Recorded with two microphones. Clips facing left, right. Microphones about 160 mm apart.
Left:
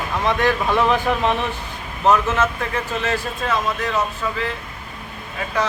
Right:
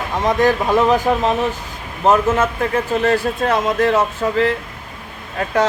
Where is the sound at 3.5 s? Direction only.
55° right (ahead or behind).